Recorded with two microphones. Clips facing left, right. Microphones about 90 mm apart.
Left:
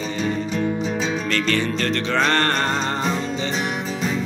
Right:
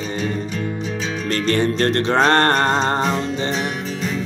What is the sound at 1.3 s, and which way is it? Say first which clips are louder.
Music: right 6 dB; 45° right (ahead or behind).